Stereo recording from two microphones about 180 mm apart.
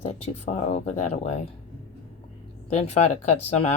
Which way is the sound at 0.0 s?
35° left (ahead or behind).